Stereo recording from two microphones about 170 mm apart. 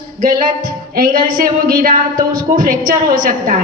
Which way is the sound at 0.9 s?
55° right (ahead or behind).